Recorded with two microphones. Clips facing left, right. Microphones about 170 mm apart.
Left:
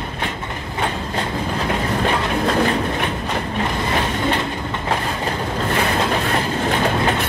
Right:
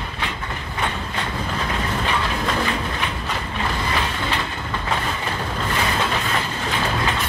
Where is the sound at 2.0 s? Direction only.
45° left (ahead or behind).